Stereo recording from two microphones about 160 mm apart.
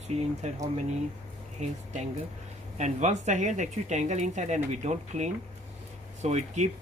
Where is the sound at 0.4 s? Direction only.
45° right (ahead or behind).